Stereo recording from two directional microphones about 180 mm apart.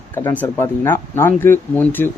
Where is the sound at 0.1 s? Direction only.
10° left (ahead or behind).